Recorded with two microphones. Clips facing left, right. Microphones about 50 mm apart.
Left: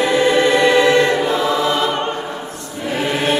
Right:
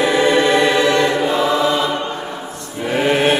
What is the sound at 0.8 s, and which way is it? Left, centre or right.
Choir, centre.